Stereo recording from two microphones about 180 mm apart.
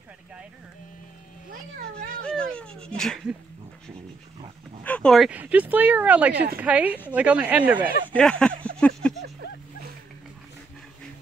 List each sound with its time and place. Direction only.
2.2 s speech: 5° left (ahead or behind)
4.8 s speech: 5° left (ahead or behind)
8.1 s speech: 5° left (ahead or behind)
8.7 s a sound: 5° left (ahead or behind)